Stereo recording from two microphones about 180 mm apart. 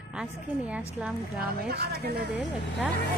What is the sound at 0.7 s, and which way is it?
Speech, 5° right (ahead or behind).